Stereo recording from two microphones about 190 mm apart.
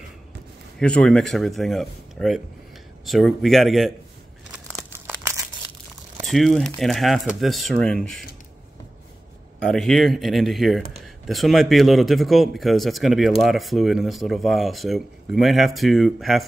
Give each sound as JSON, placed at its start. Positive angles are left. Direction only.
{"t": 0.7, "sound": "a man's voice", "side_deg": 5}
{"t": 5.0, "sound": "crumpling", "side_deg": -15}
{"t": 6.2, "sound": "a man's voice", "side_deg": 0}
{"t": 9.7, "sound": "a man's voice", "side_deg": 0}